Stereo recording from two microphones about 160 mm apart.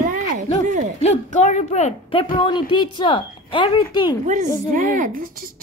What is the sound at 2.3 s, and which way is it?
A woman's voice, 30° left (ahead or behind).